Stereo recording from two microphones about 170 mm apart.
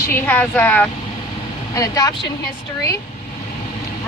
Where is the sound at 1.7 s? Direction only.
20° left (ahead or behind).